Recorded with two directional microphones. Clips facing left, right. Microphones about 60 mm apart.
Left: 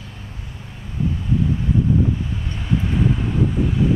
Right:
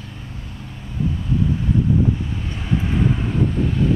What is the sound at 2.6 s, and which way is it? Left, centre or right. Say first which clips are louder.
Vehicle: even; centre.